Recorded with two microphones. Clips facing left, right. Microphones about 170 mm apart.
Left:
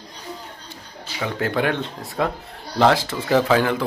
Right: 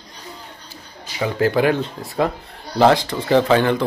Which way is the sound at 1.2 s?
5° right (ahead or behind).